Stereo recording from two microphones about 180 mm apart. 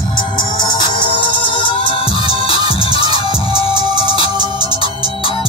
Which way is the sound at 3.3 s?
30° left (ahead or behind).